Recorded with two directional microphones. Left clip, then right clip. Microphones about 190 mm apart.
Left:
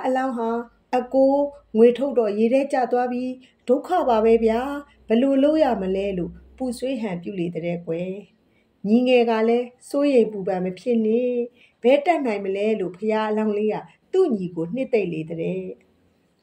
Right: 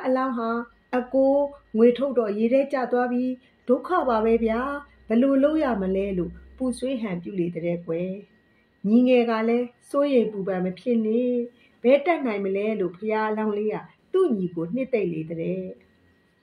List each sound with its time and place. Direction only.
0.0 s speech: 25° left (ahead or behind)
1.1 s a sound: 10° left (ahead or behind)
1.8 s a woman's voice: 25° left (ahead or behind)